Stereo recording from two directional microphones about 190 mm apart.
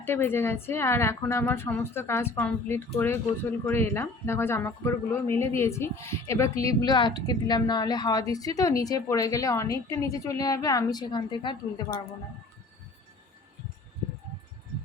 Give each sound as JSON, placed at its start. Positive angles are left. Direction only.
{"t": 0.0, "sound": "a woman's voice", "side_deg": 10}